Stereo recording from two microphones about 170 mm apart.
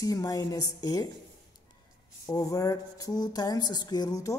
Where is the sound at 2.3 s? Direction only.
20° left (ahead or behind).